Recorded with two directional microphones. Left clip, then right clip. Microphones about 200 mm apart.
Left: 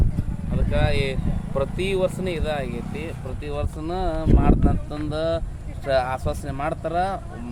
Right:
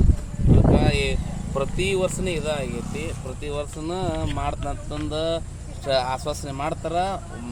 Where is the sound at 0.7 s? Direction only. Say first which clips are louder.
Left 2 dB; centre (ahead or behind).